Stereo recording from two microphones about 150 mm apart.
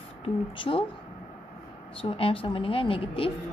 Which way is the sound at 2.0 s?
40° left (ahead or behind).